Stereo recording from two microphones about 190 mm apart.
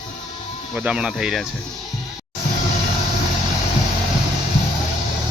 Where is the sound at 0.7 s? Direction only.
5° right (ahead or behind).